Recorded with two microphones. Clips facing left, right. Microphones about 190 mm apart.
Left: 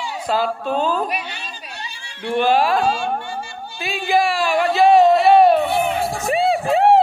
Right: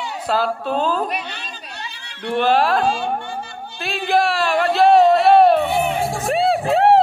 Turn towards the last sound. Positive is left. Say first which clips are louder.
# even
turn(degrees=0)  # may be behind; listen again after turning